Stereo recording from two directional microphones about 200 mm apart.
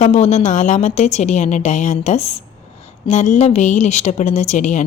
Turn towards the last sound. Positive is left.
turn(degrees=35)  # may be behind; listen again after turning